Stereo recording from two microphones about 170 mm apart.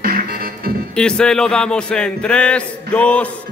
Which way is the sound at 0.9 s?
5° left (ahead or behind).